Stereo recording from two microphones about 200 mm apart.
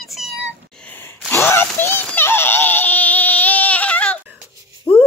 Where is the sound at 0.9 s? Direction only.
10° left (ahead or behind).